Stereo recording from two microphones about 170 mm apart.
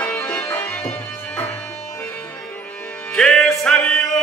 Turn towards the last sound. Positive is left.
turn(degrees=5)  # may be behind; listen again after turning